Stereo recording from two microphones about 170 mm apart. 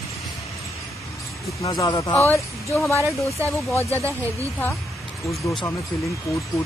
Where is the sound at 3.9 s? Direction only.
15° right (ahead or behind).